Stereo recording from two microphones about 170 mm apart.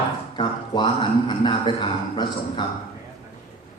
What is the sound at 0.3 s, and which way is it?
A man's voice, 25° left (ahead or behind).